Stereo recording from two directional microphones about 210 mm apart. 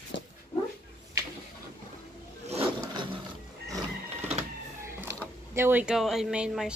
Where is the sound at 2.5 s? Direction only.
25° right (ahead or behind).